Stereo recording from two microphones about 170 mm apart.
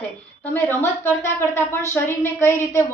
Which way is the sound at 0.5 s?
10° left (ahead or behind).